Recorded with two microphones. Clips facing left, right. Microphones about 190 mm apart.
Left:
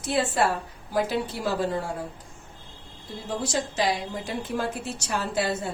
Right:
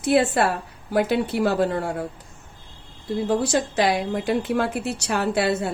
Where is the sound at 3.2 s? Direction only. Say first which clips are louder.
Right 6 dB; 60° right (ahead or behind).